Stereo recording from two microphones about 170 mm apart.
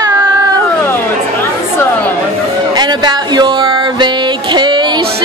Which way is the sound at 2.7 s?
25° right (ahead or behind).